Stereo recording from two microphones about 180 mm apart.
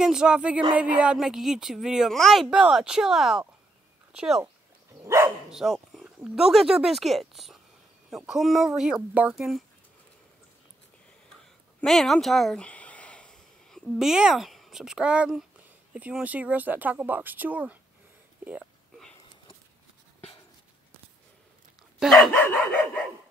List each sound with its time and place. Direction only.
0.0 s speech: 5° right (ahead or behind)
5.0 s speech: 15° right (ahead or behind)
5.5 s speech: centre (ahead or behind)
11.8 s speech: centre (ahead or behind)
18.4 s a sound: 10° right (ahead or behind)
22.0 s dog: 5° left (ahead or behind)